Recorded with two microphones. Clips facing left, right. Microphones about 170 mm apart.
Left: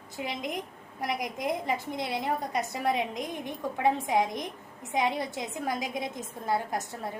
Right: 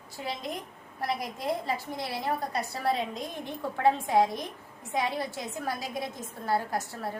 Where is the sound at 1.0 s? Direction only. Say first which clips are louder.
Even; 15° left (ahead or behind).